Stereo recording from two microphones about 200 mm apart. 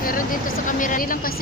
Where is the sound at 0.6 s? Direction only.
40° left (ahead or behind).